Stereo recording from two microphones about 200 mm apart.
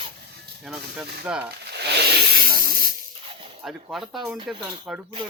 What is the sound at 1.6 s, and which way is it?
Rub, 55° right (ahead or behind).